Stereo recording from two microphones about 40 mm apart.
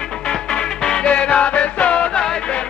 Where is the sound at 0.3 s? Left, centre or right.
Centre.